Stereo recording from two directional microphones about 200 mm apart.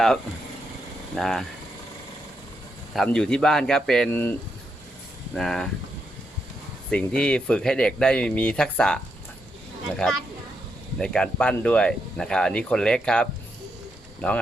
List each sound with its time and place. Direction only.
1.1 s speech: centre (ahead or behind)
2.9 s speech: centre (ahead or behind)
6.9 s speech: 5° left (ahead or behind)
10.9 s speech: 5° left (ahead or behind)